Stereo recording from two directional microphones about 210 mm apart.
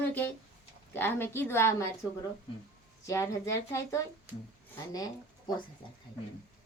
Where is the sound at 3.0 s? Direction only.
15° left (ahead or behind).